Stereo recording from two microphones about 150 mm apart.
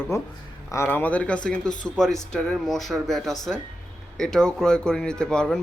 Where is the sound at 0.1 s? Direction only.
20° left (ahead or behind).